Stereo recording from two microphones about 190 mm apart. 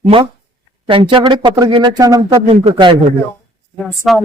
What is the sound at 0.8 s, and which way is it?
Speech, 25° right (ahead or behind).